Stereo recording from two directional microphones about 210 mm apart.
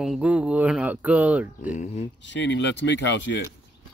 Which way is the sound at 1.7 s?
35° left (ahead or behind).